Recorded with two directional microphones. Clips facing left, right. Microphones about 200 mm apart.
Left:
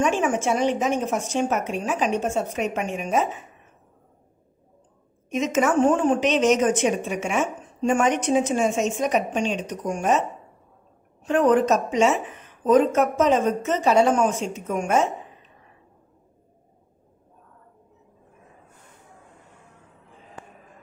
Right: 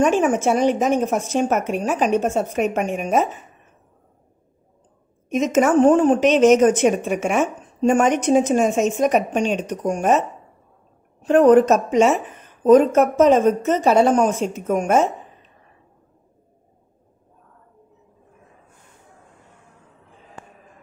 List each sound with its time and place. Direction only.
0.0 s a woman's voice: 40° right (ahead or behind)
5.3 s a woman's voice: 40° right (ahead or behind)
11.2 s a woman's voice: 45° right (ahead or behind)